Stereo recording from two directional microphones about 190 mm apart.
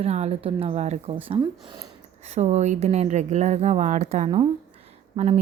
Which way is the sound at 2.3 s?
35° right (ahead or behind).